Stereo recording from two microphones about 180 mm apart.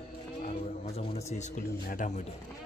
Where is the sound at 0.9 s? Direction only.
35° left (ahead or behind).